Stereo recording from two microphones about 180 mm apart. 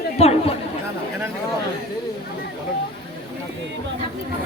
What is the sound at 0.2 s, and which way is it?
Speech, 35° left (ahead or behind).